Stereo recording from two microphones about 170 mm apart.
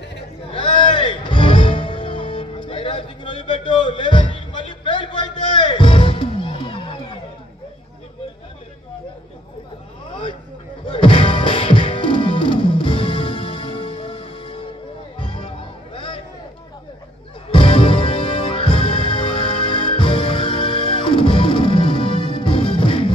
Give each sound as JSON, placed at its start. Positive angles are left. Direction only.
{"t": 0.5, "sound": "music", "side_deg": 30}
{"t": 10.9, "sound": "music", "side_deg": 30}
{"t": 17.5, "sound": "music", "side_deg": 30}